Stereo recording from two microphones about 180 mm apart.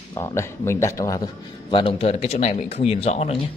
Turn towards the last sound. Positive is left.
turn(degrees=35)  # may be behind; listen again after turning